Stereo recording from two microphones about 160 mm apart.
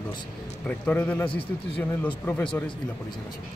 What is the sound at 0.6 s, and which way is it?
Speech, 10° left (ahead or behind).